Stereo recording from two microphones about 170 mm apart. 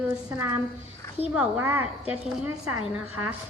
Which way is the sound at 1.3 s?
10° right (ahead or behind).